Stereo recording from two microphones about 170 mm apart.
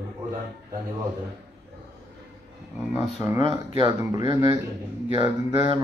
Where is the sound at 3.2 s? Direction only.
20° right (ahead or behind).